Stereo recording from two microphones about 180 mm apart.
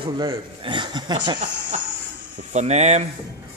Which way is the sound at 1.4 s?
45° right (ahead or behind).